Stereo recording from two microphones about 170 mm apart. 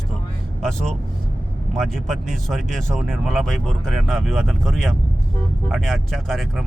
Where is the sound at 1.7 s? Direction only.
Centre (ahead or behind).